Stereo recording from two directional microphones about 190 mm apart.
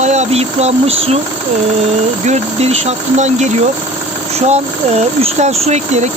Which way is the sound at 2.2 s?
35° right (ahead or behind).